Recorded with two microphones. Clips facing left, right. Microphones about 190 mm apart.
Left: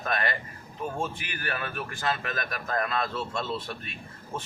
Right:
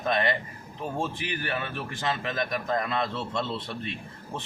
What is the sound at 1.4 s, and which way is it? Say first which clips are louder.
A man's voice: left 3 dB; 25° right (ahead or behind).